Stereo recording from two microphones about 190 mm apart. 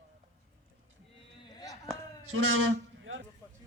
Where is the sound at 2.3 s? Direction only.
90° right.